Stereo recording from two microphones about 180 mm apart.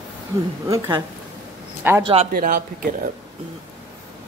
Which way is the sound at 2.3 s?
55° right (ahead or behind).